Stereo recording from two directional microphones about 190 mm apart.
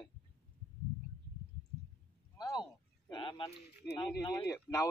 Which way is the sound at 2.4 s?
20° left (ahead or behind).